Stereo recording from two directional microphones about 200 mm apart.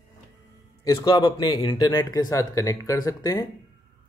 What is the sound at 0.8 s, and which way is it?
Speech, 20° left (ahead or behind).